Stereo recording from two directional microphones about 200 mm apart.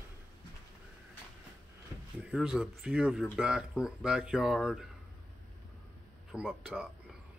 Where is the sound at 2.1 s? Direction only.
5° right (ahead or behind).